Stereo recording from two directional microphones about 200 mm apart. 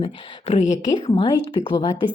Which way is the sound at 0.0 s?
30° left (ahead or behind).